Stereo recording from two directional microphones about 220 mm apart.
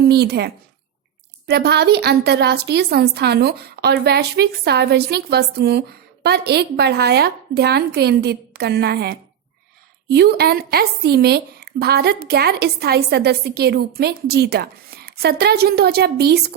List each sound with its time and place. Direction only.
0.0 s a woman's voice: 45° right (ahead or behind)